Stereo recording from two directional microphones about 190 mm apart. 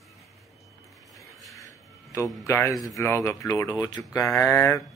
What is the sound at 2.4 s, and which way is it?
Speech, 15° left (ahead or behind).